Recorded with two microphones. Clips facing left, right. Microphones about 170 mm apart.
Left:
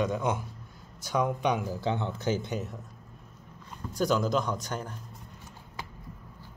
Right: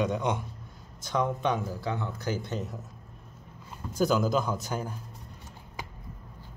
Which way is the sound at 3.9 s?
5° right (ahead or behind).